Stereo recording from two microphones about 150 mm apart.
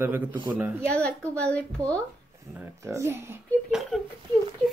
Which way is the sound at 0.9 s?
5° left (ahead or behind).